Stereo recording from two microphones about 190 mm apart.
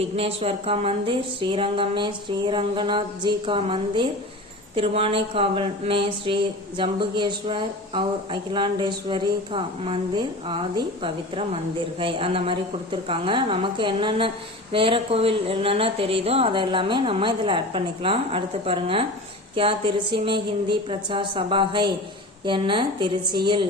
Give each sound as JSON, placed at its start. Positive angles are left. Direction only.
{"t": 0.0, "sound": "speech", "side_deg": -30}